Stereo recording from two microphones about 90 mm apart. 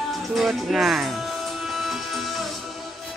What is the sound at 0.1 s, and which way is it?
Music, centre (ahead or behind).